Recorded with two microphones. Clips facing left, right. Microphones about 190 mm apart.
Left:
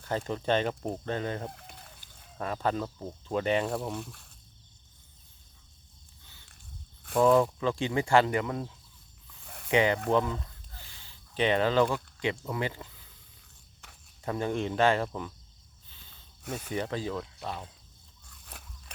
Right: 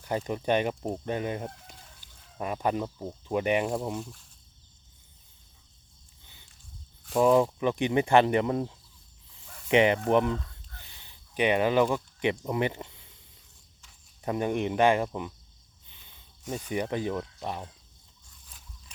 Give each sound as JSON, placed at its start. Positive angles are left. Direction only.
{"t": 0.0, "sound": "speech", "side_deg": -15}
{"t": 4.0, "sound": "speech", "side_deg": 65}
{"t": 7.2, "sound": "speech", "side_deg": -15}
{"t": 13.8, "sound": "walk", "side_deg": 65}
{"t": 14.3, "sound": "speech", "side_deg": -15}
{"t": 15.9, "sound": "a sound", "side_deg": -15}
{"t": 16.5, "sound": "speech", "side_deg": -15}
{"t": 18.3, "sound": "a sound", "side_deg": 65}